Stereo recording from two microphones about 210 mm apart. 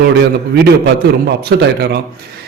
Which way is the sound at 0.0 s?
50° right (ahead or behind).